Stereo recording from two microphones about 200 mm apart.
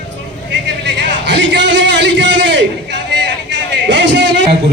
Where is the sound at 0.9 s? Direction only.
60° right (ahead or behind).